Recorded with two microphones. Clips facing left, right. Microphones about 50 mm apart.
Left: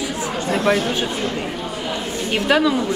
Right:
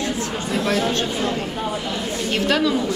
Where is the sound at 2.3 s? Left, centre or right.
Centre.